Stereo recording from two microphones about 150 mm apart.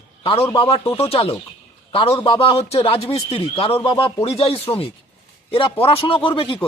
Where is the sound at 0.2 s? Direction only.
40° left (ahead or behind).